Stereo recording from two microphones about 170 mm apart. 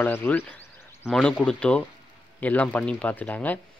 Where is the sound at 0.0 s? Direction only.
10° left (ahead or behind).